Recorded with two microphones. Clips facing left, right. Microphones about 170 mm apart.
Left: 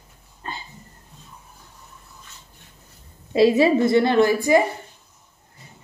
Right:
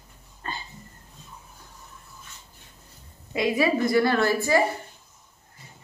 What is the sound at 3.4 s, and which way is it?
A woman's voice, 30° left (ahead or behind).